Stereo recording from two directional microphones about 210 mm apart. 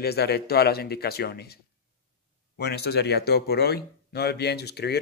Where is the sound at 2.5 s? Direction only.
50° left (ahead or behind).